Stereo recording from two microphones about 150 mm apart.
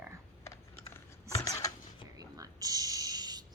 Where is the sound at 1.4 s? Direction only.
20° left (ahead or behind).